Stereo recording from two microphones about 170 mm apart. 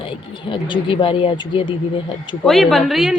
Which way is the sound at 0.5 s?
30° left (ahead or behind).